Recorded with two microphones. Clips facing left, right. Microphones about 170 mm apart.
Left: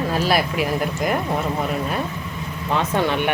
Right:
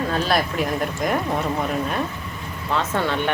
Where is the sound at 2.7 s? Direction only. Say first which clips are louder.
Left 2 dB; 15° left (ahead or behind).